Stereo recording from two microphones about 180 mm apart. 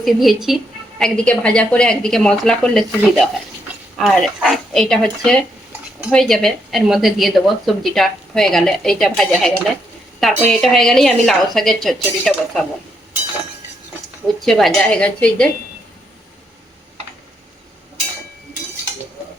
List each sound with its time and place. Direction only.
0.0 s a woman's voice: centre (ahead or behind)
14.4 s a woman's voice: centre (ahead or behind)